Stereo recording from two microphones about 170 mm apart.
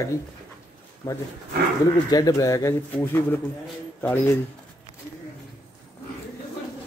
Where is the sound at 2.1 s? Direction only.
20° left (ahead or behind).